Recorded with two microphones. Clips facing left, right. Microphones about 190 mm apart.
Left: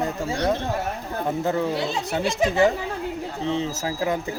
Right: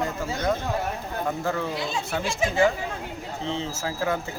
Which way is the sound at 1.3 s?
20° left (ahead or behind).